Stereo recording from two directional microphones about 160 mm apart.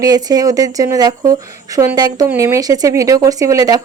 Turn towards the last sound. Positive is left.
turn(degrees=-25)  # may be behind; listen again after turning